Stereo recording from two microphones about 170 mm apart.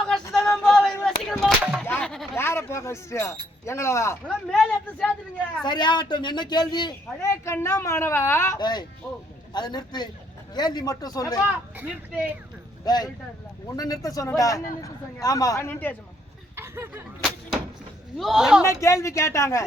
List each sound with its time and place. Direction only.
0.3 s a sound: 5° left (ahead or behind)
1.0 s music: centre (ahead or behind)
1.8 s music: 10° left (ahead or behind)
3.7 s speech: 15° left (ahead or behind)
4.3 s speech: 5° left (ahead or behind)
5.6 s a man's voice: 25° left (ahead or behind)
11.8 s speech: 10° right (ahead or behind)
12.8 s a man's voice: 25° left (ahead or behind)
16.6 s a sound: 15° right (ahead or behind)
17.2 s a sound: centre (ahead or behind)
18.2 s speech: centre (ahead or behind)
18.6 s speech: 15° left (ahead or behind)